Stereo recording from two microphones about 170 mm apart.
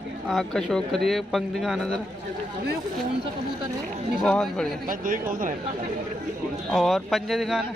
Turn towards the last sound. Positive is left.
turn(degrees=0)  # may be behind; listen again after turning